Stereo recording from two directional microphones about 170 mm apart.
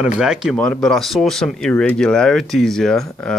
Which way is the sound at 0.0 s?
5° right (ahead or behind).